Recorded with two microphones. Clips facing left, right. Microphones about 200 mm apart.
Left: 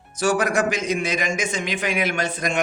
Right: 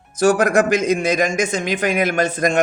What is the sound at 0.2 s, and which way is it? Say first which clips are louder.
A man's voice: right 6 dB; 45° right (ahead or behind).